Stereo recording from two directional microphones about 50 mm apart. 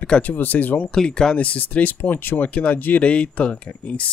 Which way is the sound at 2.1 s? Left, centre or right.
Left.